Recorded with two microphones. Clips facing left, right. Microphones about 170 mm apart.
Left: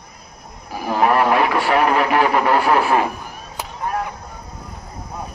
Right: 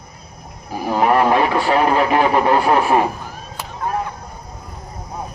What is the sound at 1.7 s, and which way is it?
A man's voice, 25° right (ahead or behind).